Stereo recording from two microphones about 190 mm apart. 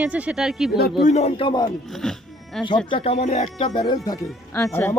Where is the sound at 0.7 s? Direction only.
55° left (ahead or behind).